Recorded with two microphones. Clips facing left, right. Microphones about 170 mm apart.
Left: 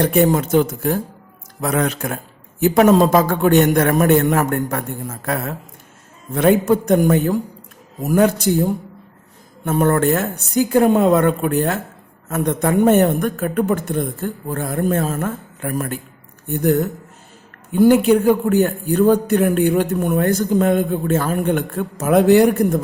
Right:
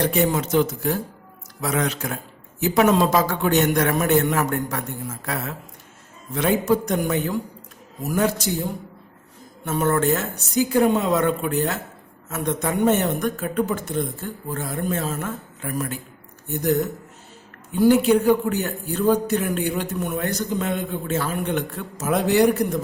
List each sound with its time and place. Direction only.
0.0 s a man's voice: 50° left (ahead or behind)